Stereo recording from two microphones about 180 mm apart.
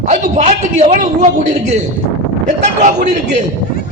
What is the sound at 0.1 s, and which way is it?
Speech, 40° right (ahead or behind).